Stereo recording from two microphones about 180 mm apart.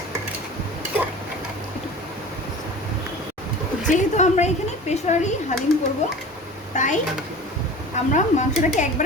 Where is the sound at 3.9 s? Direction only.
40° left (ahead or behind).